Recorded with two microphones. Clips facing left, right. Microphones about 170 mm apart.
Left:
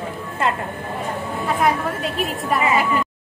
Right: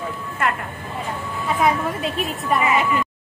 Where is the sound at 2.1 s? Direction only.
Centre (ahead or behind).